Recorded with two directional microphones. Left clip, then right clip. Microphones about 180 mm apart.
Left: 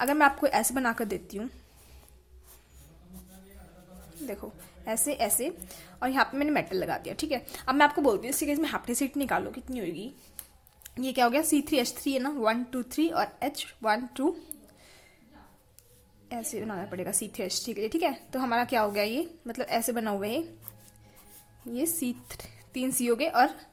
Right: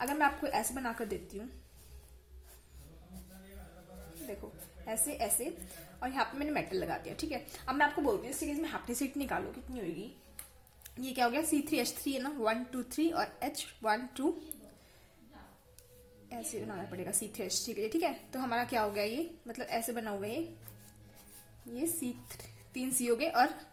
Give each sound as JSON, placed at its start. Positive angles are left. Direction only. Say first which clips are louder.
{"t": 0.0, "sound": "a woman's voice", "louder": "left 8 dB", "side_deg": 40}
{"t": 4.9, "sound": "a woman's voice", "louder": "left 7 dB", "side_deg": 35}
{"t": 8.0, "sound": "speech", "louder": "left 7 dB", "side_deg": 50}
{"t": 8.9, "sound": "a woman's voice", "louder": "left 7 dB", "side_deg": 25}
{"t": 10.8, "sound": "a woman's voice", "louder": "left 7 dB", "side_deg": 30}
{"t": 16.3, "sound": "a woman's voice", "louder": "left 6 dB", "side_deg": 30}
{"t": 21.7, "sound": "a woman's voice", "louder": "left 6 dB", "side_deg": 35}